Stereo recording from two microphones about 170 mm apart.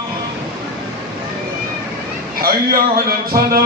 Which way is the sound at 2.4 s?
60° right (ahead or behind).